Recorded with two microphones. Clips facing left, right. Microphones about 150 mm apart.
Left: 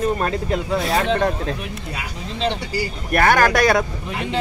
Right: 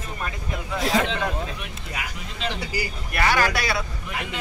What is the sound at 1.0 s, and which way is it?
Speech, 40° left (ahead or behind).